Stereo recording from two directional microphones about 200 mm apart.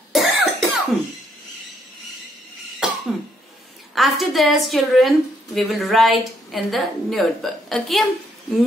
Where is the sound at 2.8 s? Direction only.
5° right (ahead or behind).